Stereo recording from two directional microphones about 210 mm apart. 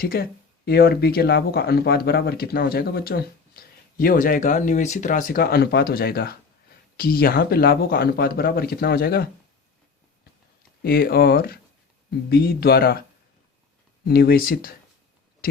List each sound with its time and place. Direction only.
0.0 s speech: 45° left (ahead or behind)
10.8 s speech: 45° left (ahead or behind)